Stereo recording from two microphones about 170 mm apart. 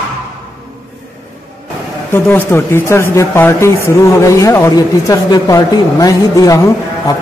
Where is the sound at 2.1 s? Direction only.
15° left (ahead or behind).